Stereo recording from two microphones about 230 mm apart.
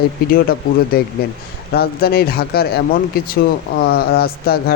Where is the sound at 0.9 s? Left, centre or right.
Left.